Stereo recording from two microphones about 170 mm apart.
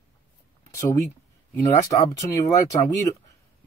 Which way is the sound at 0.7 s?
15° left (ahead or behind).